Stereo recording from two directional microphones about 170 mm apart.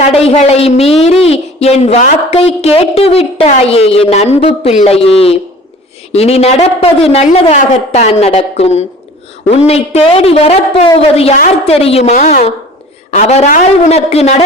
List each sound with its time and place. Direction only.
0.0 s a woman's voice: 40° left (ahead or behind)